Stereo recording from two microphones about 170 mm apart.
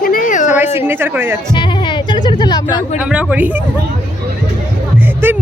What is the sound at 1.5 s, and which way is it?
Music, 30° left (ahead or behind).